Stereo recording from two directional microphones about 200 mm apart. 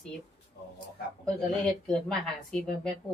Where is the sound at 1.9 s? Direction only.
5° left (ahead or behind).